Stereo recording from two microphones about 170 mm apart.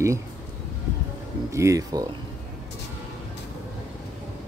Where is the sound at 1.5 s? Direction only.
20° right (ahead or behind).